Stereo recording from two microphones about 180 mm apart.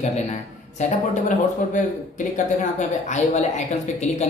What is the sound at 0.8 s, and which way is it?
A woman's voice, 45° left (ahead or behind).